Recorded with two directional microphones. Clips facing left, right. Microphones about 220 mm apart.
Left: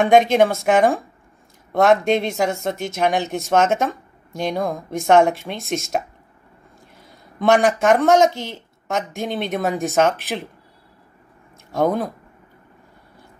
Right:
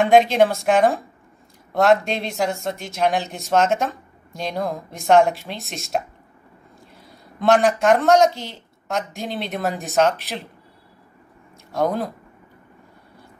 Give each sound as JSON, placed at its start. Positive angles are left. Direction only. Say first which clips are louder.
{"t": 0.0, "sound": "speech", "louder": "left 1 dB", "side_deg": 0}
{"t": 7.1, "sound": "speech", "louder": "left 1 dB", "side_deg": 0}
{"t": 9.1, "sound": "speech", "louder": "left 4 dB", "side_deg": 50}
{"t": 9.5, "sound": "speech", "louder": "left 4 dB", "side_deg": 0}
{"t": 11.8, "sound": "speech", "louder": "left 2 dB", "side_deg": 0}